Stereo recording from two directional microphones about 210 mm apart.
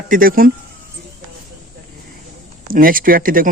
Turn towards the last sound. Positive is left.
turn(degrees=-40)  # may be behind; listen again after turning